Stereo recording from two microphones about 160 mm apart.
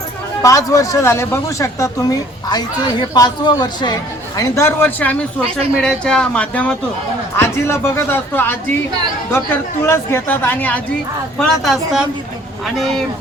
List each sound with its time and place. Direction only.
0.4 s speech: 20° left (ahead or behind)
4.4 s speech: 15° left (ahead or behind)
9.8 s speech: 15° left (ahead or behind)
11.3 s a woman's voice: centre (ahead or behind)